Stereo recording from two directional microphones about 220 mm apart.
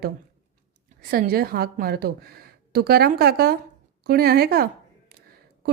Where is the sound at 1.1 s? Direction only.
40° right (ahead or behind).